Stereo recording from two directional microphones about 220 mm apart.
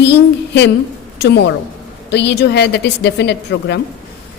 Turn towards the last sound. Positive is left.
turn(degrees=50)  # may be behind; listen again after turning